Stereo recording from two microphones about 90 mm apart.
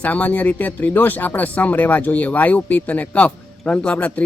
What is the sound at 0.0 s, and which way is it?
Speech, 15° left (ahead or behind).